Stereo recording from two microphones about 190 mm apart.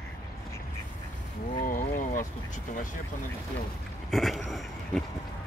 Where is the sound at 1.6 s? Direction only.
45° left (ahead or behind).